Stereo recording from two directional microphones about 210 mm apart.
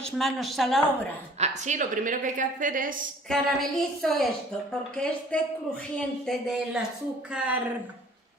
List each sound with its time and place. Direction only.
0.0 s a woman's voice: centre (ahead or behind)
1.4 s a woman's voice: 35° right (ahead or behind)
3.3 s a woman's voice: centre (ahead or behind)
5.3 s a woman's voice: 5° left (ahead or behind)